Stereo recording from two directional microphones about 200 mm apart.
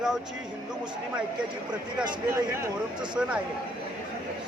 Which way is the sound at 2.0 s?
15° right (ahead or behind).